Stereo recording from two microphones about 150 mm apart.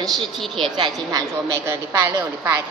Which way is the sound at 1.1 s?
20° right (ahead or behind).